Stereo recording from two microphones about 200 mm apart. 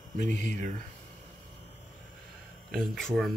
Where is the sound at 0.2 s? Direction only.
35° right (ahead or behind).